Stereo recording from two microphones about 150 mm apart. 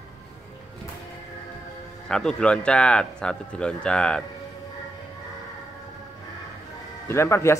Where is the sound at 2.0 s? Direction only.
5° left (ahead or behind).